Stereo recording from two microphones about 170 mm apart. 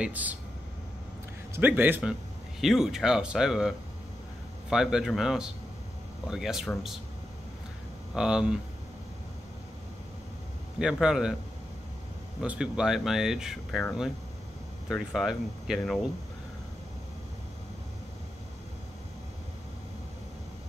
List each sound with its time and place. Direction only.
0.0 s a man's voice: 10° right (ahead or behind)
1.5 s a man's voice: 10° right (ahead or behind)
8.1 s speech: 5° right (ahead or behind)
10.8 s speech: 5° right (ahead or behind)
12.4 s speech: 5° right (ahead or behind)